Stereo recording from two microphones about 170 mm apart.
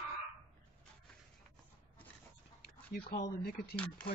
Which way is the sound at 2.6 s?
65° left (ahead or behind).